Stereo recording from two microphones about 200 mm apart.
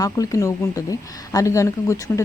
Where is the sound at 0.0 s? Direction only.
15° left (ahead or behind).